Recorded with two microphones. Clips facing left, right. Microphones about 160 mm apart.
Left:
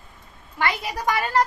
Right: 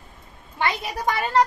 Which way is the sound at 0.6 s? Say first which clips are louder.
Even; 25° right (ahead or behind).